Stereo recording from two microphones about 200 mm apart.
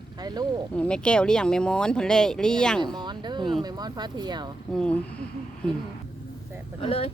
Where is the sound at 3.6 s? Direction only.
20° right (ahead or behind).